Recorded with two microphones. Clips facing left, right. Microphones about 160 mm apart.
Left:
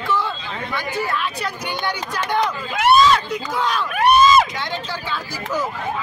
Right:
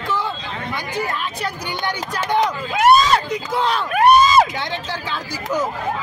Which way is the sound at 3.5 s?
30° right (ahead or behind).